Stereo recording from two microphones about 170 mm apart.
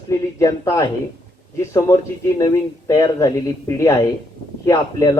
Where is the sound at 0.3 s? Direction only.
20° left (ahead or behind).